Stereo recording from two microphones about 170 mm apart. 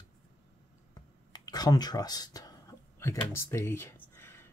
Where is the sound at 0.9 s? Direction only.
25° left (ahead or behind).